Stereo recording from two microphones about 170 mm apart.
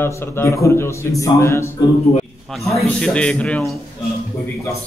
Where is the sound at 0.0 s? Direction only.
15° left (ahead or behind).